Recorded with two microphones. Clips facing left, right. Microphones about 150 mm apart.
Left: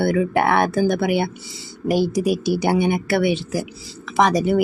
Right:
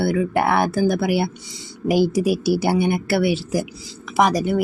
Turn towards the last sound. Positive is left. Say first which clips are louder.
# left 1 dB
turn(degrees=0)  # may be behind; listen again after turning